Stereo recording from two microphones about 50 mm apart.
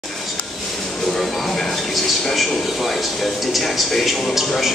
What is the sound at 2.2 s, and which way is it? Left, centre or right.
A man's voice, centre.